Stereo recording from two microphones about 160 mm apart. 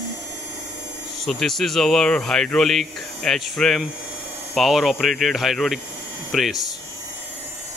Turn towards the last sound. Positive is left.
turn(degrees=0)  # may be behind; listen again after turning